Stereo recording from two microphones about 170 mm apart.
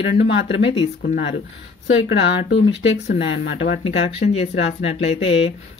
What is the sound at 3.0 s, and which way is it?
Speech, 80° left.